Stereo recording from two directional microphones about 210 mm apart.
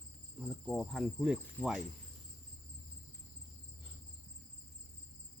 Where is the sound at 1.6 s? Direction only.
5° left (ahead or behind).